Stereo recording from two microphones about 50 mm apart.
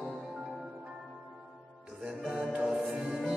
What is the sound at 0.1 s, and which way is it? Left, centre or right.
Music, centre.